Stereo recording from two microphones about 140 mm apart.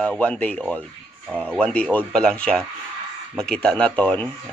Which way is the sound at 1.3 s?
10° right (ahead or behind).